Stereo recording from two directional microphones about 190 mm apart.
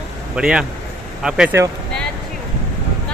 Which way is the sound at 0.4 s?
5° right (ahead or behind).